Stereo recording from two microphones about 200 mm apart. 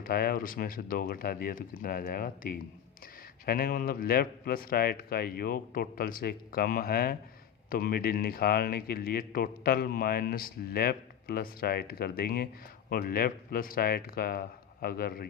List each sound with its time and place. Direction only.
0.0 s speech: 50° left (ahead or behind)